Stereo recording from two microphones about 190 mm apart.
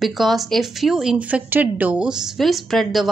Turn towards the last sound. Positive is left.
turn(degrees=0)  # may be behind; listen again after turning